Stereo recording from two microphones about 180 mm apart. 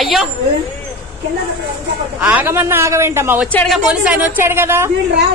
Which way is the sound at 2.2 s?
10° right (ahead or behind).